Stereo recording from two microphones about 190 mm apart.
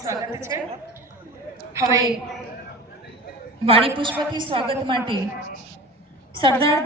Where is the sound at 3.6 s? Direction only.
30° right (ahead or behind).